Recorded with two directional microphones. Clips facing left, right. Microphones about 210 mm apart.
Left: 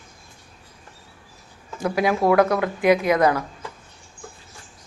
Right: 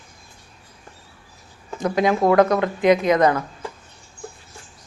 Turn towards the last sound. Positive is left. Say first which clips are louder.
# right 2 dB
turn(degrees=10)  # may be behind; listen again after turning